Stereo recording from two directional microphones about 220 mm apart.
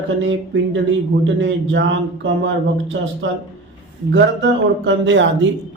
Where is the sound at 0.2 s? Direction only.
60° right (ahead or behind).